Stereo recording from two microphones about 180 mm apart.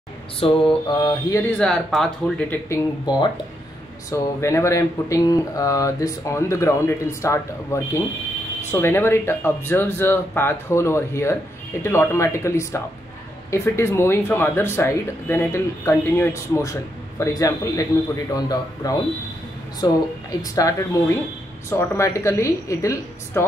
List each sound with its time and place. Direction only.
0.4 s mantra: 30° left (ahead or behind)
0.8 s a man's voice: 25° left (ahead or behind)
1.6 s speech: 5° left (ahead or behind)
4.1 s a man's voice: 15° left (ahead or behind)